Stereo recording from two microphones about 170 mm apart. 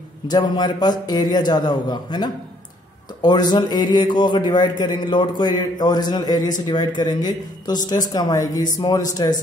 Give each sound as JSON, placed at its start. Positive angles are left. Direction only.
{"t": 0.3, "sound": "speech", "side_deg": 25}